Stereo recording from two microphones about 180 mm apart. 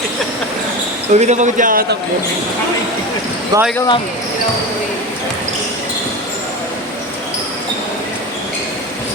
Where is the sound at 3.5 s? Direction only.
20° right (ahead or behind).